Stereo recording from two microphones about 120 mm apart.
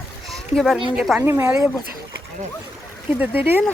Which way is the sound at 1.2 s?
20° right (ahead or behind).